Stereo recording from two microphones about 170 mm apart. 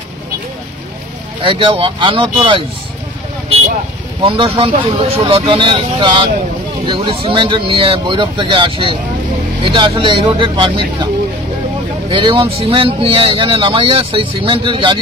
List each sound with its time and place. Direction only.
1.4 s speech: 30° right (ahead or behind)
4.2 s speech: 30° right (ahead or behind)
12.1 s speech: 30° right (ahead or behind)